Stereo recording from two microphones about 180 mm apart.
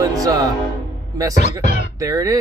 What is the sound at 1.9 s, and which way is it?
Speech, 20° right (ahead or behind).